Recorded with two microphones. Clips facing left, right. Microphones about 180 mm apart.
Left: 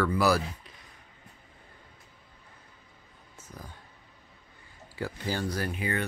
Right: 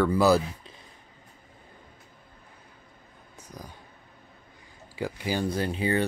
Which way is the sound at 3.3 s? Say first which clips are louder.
Right 2 dB; 15° right (ahead or behind).